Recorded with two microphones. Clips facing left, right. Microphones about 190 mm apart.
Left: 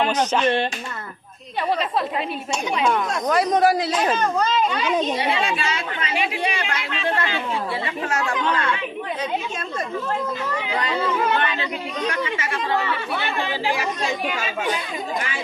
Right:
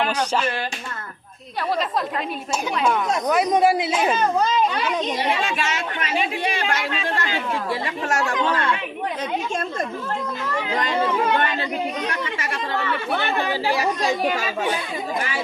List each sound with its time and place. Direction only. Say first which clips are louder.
3.1 s speech: right 1 dB; 10° right (ahead or behind)
13.1 s speech: right 3 dB; 40° right (ahead or behind)